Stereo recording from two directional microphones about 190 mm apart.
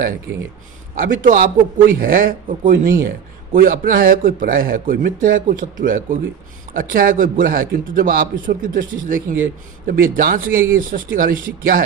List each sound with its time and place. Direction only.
0.9 s a man's voice: 45° right (ahead or behind)